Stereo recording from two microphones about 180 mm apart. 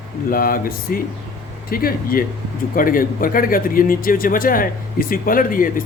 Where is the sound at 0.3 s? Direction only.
55° left (ahead or behind).